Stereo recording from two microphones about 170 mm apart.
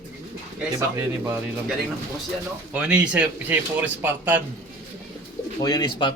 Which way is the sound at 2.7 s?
5° right (ahead or behind).